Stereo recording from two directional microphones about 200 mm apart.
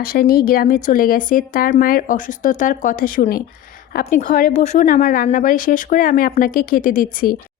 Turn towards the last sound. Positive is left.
turn(degrees=45)  # may be behind; listen again after turning